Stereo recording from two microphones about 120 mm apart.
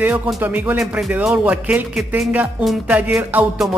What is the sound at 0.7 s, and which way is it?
A man's voice, 5° right (ahead or behind).